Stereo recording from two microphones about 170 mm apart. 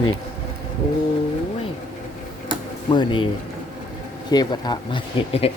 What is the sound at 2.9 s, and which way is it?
Speech, 30° left (ahead or behind).